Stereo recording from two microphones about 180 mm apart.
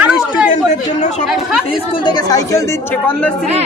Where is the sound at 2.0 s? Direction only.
20° left (ahead or behind).